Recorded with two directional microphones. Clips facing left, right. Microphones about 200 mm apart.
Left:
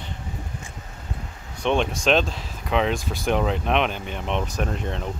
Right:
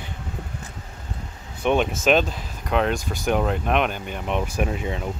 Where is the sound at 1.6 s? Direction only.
5° right (ahead or behind).